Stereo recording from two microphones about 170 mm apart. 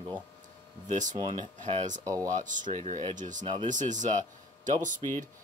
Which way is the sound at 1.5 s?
45° right (ahead or behind).